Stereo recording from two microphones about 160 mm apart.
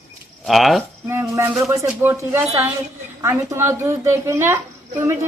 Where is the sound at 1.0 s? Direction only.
15° right (ahead or behind).